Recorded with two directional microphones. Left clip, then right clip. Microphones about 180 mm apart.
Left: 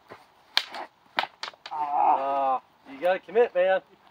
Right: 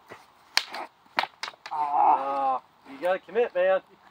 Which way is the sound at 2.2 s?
70° left (ahead or behind).